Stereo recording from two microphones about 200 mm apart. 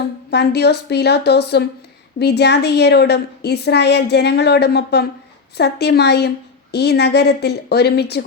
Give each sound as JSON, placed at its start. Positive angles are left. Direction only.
{"t": 0.3, "sound": "a woman's voice", "side_deg": 55}